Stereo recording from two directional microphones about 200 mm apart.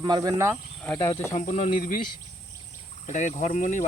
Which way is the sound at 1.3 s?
40° left (ahead or behind).